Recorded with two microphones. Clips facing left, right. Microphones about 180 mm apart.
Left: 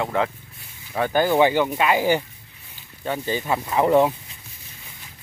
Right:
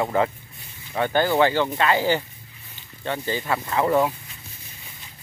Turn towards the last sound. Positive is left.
turn(degrees=20)  # may be behind; listen again after turning